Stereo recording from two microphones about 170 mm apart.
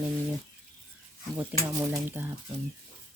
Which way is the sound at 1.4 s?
15° right (ahead or behind).